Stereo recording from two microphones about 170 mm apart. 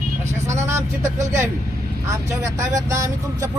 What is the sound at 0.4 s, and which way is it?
Speech, 15° right (ahead or behind).